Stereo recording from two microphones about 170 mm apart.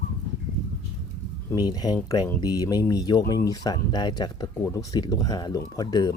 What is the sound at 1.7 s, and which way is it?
Speech, 25° left (ahead or behind).